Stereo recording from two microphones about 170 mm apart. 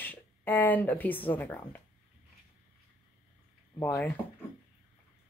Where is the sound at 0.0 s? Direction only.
10° left (ahead or behind).